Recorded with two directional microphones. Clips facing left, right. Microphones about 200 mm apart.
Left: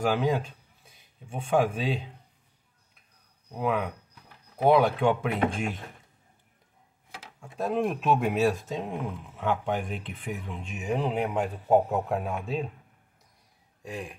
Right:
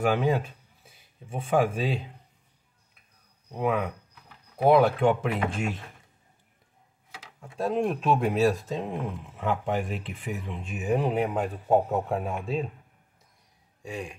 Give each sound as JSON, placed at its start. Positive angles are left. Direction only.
{"t": 0.0, "sound": "speech", "side_deg": 0}
{"t": 3.5, "sound": "speech", "side_deg": 0}
{"t": 7.6, "sound": "speech", "side_deg": 0}
{"t": 13.8, "sound": "speech", "side_deg": 0}